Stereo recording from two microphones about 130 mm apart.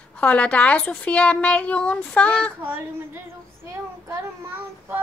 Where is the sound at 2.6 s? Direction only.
20° right (ahead or behind).